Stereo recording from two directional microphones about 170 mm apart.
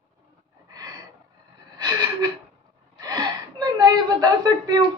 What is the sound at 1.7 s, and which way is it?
Gasp, 25° right (ahead or behind).